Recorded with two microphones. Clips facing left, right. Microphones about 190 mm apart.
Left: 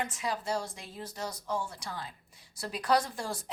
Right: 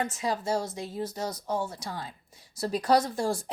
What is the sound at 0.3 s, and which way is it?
Speech, 40° right (ahead or behind).